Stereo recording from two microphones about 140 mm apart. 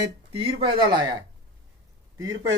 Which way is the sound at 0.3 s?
35° right (ahead or behind).